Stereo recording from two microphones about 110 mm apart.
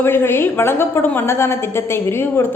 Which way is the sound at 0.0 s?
20° left (ahead or behind).